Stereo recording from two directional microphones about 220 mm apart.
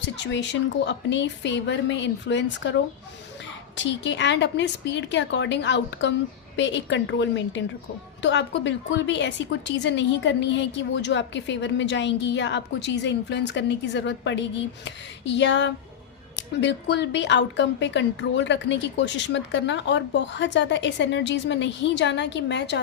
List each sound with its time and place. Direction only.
0.0 s a woman's voice: 55° left (ahead or behind)
3.8 s a woman's voice: 55° left (ahead or behind)